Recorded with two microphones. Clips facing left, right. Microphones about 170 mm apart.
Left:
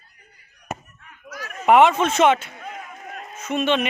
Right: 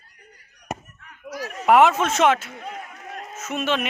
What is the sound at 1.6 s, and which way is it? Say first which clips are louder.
Speech: left 1 dB; centre (ahead or behind).